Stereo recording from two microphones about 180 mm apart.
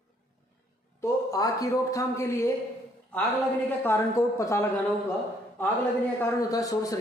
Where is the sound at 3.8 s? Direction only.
15° left (ahead or behind).